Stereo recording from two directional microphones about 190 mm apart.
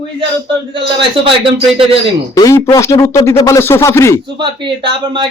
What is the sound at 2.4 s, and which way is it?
A man's voice, 15° left (ahead or behind).